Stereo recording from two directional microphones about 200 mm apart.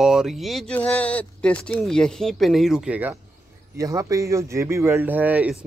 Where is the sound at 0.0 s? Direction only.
Centre (ahead or behind).